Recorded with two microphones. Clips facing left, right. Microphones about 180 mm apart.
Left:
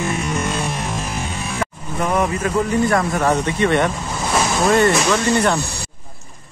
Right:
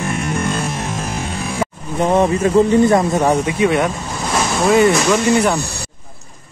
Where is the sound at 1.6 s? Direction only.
25° right (ahead or behind); by 5.6 s 10° right (ahead or behind).